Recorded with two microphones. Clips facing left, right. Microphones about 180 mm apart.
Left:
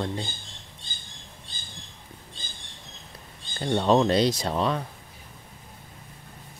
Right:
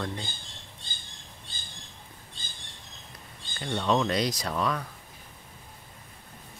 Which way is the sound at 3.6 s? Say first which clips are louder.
Left 5 dB; 35° left (ahead or behind).